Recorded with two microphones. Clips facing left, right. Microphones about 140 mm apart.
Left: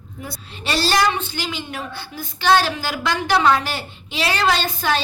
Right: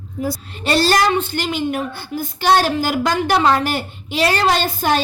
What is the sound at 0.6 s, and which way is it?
A woman's voice, 50° right (ahead or behind).